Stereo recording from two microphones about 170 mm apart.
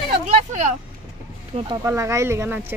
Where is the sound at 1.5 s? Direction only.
35° right (ahead or behind).